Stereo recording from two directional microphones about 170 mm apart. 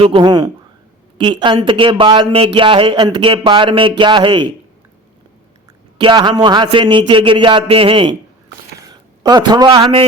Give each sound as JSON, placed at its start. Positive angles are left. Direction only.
{"t": 0.0, "sound": "speech", "side_deg": -30}
{"t": 6.0, "sound": "speech", "side_deg": -25}
{"t": 9.2, "sound": "speech", "side_deg": -25}